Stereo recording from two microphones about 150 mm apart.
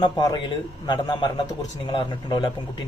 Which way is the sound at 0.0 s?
30° left (ahead or behind).